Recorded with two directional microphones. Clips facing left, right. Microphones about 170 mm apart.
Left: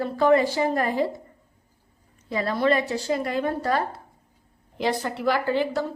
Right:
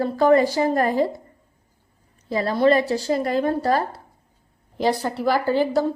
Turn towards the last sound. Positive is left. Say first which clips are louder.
# right 4 dB
turn(degrees=-40)  # may be behind; listen again after turning